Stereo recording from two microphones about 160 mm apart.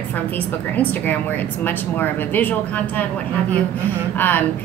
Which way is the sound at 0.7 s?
10° left (ahead or behind).